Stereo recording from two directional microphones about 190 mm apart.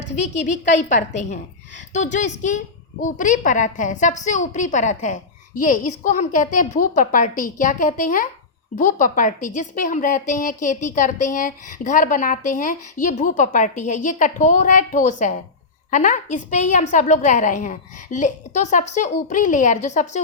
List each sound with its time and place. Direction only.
0.2 s a woman's voice: 40° left (ahead or behind)